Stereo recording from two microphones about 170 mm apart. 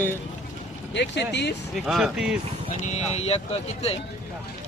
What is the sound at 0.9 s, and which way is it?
Speech, 90° left.